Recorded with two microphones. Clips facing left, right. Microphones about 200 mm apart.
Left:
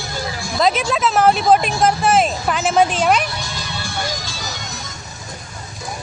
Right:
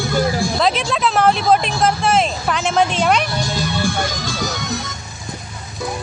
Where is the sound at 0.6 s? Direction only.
5° left (ahead or behind).